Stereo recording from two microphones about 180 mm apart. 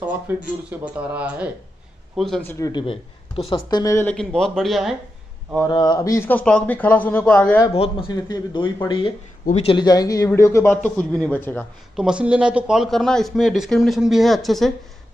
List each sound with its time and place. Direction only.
0.3 s speech: 15° right (ahead or behind)
2.5 s speech: 20° left (ahead or behind)
4.1 s speech: 5° left (ahead or behind)
5.7 s speech: 25° left (ahead or behind); by 7.6 s 5° left (ahead or behind)
7.7 s speech: 30° left (ahead or behind); by 11.6 s 10° left (ahead or behind)
11.9 s speech: 5° right (ahead or behind)